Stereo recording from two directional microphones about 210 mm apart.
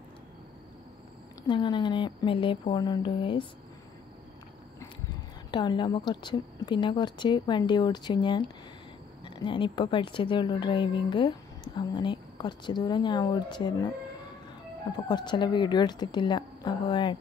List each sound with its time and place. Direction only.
1.5 s a woman's voice: 20° left (ahead or behind)
5.5 s a woman's voice: 20° left (ahead or behind)
14.9 s a woman's voice: 20° left (ahead or behind)